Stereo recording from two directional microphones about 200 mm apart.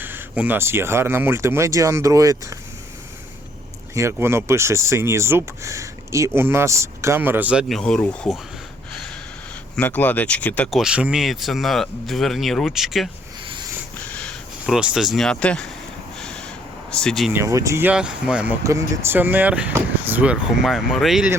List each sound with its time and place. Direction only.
0.0 s speech: 10° right (ahead or behind)
3.9 s speech: 15° right (ahead or behind); by 8.4 s 5° left (ahead or behind)
9.7 s speech: 10° left (ahead or behind)
13.5 s wheeze: 20° right (ahead or behind)
14.2 s speech: centre (ahead or behind)
16.9 s speech: 5° left (ahead or behind)
17.3 s speech: 15° right (ahead or behind)